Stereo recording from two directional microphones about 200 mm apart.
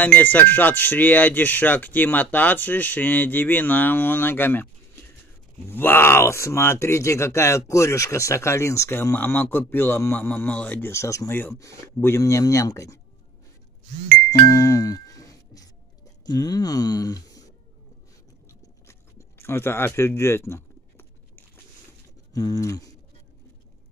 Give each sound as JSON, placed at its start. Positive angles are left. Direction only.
{"t": 0.0, "sound": "speech", "side_deg": 10}
{"t": 14.4, "sound": "music", "side_deg": 15}
{"t": 16.3, "sound": "speech", "side_deg": 20}
{"t": 18.5, "sound": "a sound", "side_deg": 15}
{"t": 22.3, "sound": "speech", "side_deg": 15}